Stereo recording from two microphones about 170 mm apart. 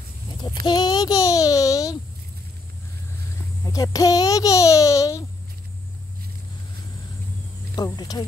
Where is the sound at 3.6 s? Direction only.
20° left (ahead or behind).